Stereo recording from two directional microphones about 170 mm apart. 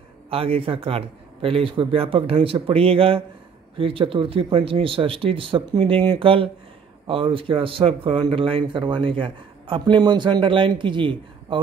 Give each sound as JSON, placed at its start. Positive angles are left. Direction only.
{"t": 0.3, "sound": "a man's voice", "side_deg": -35}